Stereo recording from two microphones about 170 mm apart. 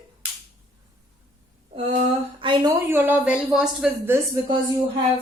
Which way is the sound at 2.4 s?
25° right (ahead or behind).